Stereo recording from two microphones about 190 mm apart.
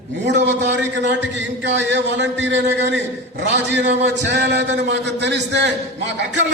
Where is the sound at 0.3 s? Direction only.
65° right (ahead or behind).